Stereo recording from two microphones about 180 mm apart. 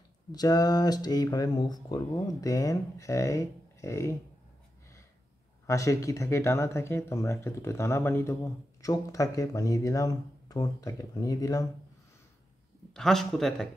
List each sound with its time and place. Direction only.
0.3 s speech: 20° left (ahead or behind)
5.7 s speech: 15° left (ahead or behind)
12.9 s speech: centre (ahead or behind)